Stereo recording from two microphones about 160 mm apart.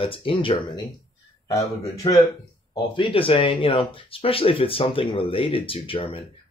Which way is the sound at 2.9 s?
35° left (ahead or behind).